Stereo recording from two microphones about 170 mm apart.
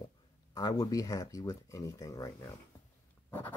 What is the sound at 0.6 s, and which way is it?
Speech, 20° left (ahead or behind).